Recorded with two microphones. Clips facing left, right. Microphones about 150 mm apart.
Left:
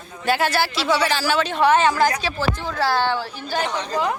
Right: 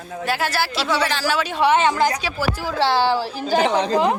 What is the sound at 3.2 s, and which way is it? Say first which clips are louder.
Speech: right 5 dB; 35° right (ahead or behind).